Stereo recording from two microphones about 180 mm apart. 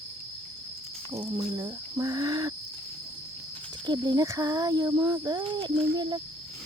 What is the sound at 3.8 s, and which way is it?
Speech, 20° right (ahead or behind).